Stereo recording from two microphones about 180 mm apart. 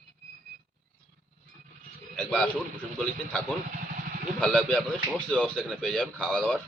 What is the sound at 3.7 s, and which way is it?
Vehicle, 50° right (ahead or behind).